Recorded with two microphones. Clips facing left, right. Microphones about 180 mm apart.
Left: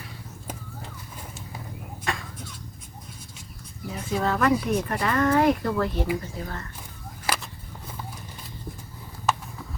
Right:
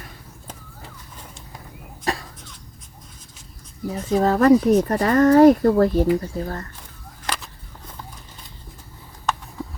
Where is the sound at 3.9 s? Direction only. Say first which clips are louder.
Right 7 dB; 40° right (ahead or behind).